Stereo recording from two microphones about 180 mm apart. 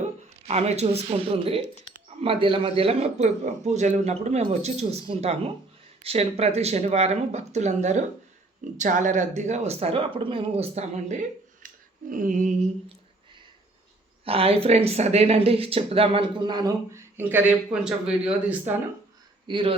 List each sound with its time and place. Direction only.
0.4 s speech: 35° right (ahead or behind)
11.6 s a sound: 50° right (ahead or behind)
14.3 s speech: 35° right (ahead or behind); by 18.5 s 5° right (ahead or behind)
19.5 s speech: 25° right (ahead or behind)